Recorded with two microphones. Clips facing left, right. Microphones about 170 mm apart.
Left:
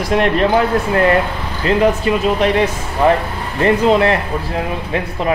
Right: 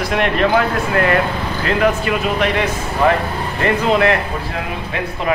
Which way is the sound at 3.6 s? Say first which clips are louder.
Left 3 dB; 30° left (ahead or behind).